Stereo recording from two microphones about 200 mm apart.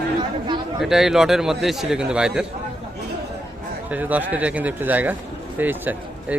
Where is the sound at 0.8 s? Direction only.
Centre (ahead or behind).